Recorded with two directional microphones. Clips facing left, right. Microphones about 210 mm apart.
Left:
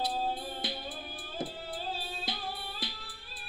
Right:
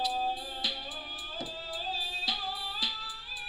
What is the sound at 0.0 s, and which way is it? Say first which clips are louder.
Music: even; 55° left (ahead or behind).